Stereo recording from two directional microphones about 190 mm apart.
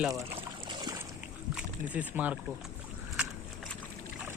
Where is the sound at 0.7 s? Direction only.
20° right (ahead or behind).